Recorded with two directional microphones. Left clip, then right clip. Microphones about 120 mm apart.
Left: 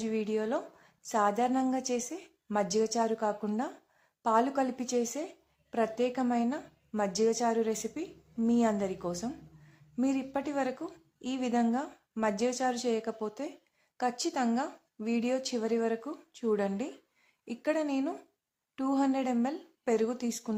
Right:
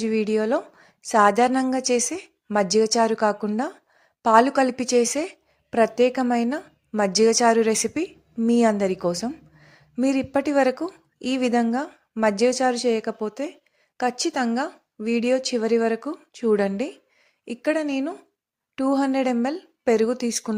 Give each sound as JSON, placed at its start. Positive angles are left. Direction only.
{"t": 0.0, "sound": "a woman's voice", "side_deg": -45}